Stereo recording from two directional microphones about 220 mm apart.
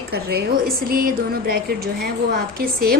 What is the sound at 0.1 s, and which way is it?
A woman's voice, 45° right (ahead or behind).